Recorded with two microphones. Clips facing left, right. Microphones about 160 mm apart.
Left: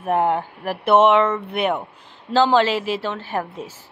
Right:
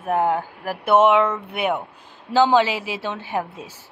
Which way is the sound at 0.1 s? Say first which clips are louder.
Left 1 dB; centre (ahead or behind).